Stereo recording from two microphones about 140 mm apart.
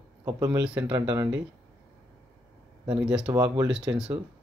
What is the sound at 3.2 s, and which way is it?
Speech, 25° right (ahead or behind).